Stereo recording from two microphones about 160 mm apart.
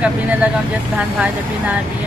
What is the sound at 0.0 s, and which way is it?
Speech, 10° right (ahead or behind).